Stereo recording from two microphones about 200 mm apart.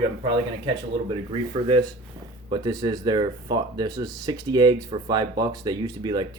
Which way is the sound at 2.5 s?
20° right (ahead or behind).